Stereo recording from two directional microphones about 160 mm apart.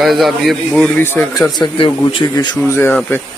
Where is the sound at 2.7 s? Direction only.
15° left (ahead or behind).